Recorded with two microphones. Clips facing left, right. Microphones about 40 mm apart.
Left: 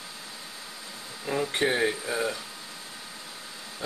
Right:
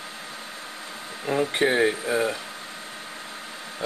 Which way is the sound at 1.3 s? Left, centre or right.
Centre.